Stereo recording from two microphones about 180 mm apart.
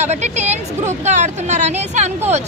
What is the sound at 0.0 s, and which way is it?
Speech, 40° right (ahead or behind).